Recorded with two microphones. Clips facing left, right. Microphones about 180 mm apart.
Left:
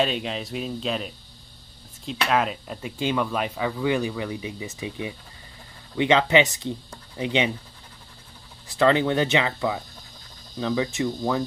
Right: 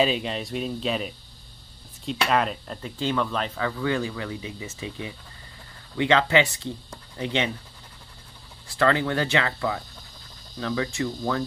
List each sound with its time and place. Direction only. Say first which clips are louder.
0.0 s speech: right 1 dB; centre (ahead or behind); by 7.5 s 15° left (ahead or behind)
8.6 s speech: left 3 dB; 20° left (ahead or behind)